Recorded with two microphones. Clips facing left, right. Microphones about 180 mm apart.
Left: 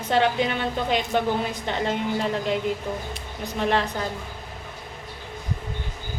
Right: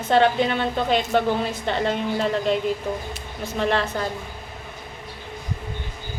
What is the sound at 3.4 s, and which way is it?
Speech, 15° left (ahead or behind).